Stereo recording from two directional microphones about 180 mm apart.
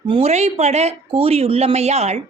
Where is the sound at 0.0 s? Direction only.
30° right (ahead or behind).